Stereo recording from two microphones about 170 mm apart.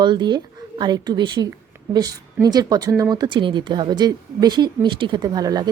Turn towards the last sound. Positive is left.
turn(degrees=-25)  # may be behind; listen again after turning